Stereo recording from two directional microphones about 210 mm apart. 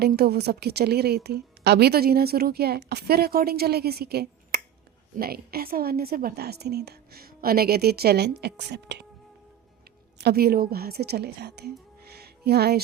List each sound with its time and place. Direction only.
0.0 s a woman's voice: 50° right (ahead or behind)
10.2 s a woman's voice: 50° right (ahead or behind)
12.0 s music: 50° right (ahead or behind)